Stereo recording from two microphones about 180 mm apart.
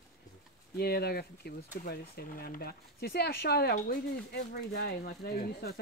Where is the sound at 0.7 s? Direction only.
60° left (ahead or behind).